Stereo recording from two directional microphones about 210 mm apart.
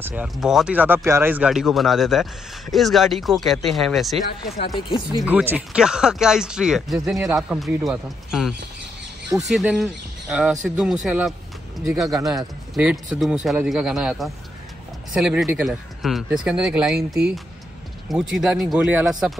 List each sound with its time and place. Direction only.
0.0 s speech: 5° right (ahead or behind)
4.6 s speech: 25° left (ahead or behind)
5.2 s speech: 10° right (ahead or behind)
18.0 s speech: centre (ahead or behind)